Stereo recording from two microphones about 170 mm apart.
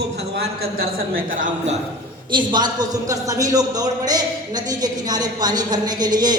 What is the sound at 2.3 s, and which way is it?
A man's voice, 25° right (ahead or behind).